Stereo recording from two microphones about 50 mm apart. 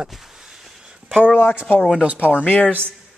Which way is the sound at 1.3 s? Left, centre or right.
Left.